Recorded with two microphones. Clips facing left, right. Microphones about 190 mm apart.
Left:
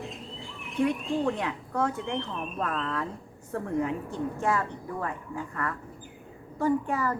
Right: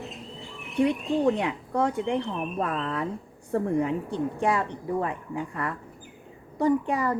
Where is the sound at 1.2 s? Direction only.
15° right (ahead or behind).